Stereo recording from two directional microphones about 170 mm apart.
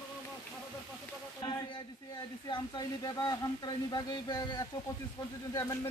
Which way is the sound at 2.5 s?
25° left (ahead or behind).